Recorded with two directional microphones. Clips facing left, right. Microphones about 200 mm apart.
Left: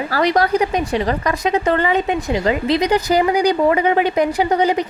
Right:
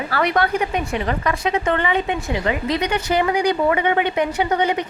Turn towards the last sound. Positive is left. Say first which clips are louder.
# left 3 dB
turn(degrees=35)  # may be behind; listen again after turning